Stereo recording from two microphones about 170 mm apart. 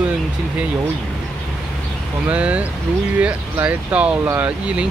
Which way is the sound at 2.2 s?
10° right (ahead or behind).